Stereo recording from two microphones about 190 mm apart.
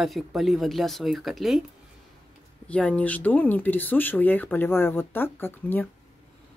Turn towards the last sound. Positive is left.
turn(degrees=10)  # may be behind; listen again after turning